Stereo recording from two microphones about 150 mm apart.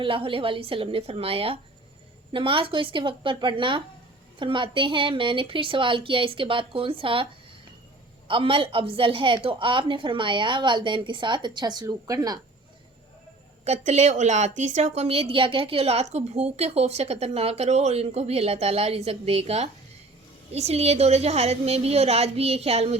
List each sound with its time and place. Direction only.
0.0 s a woman's voice: 35° right (ahead or behind)
8.3 s a woman's voice: 35° right (ahead or behind)
13.7 s a woman's voice: 50° right (ahead or behind)